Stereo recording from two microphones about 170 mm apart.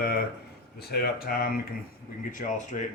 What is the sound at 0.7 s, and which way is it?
Speech, 70° left (ahead or behind).